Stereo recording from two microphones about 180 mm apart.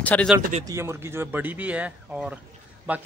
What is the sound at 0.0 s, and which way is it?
Speech, 5° left (ahead or behind).